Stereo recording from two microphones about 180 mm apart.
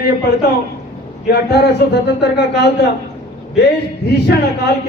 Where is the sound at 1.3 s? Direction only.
65° left (ahead or behind).